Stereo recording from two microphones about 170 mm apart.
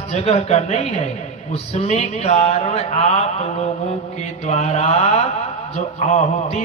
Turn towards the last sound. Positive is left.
turn(degrees=40)  # may be behind; listen again after turning